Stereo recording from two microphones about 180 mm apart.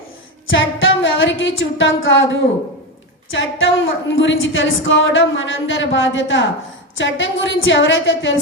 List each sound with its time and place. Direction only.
0.4 s music: 90° left
3.3 s a woman's voice: 90° left